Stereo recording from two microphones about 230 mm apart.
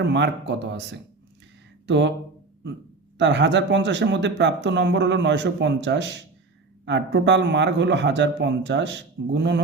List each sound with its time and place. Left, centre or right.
0.0 s speech: right
1.9 s speech: right
3.2 s speech: right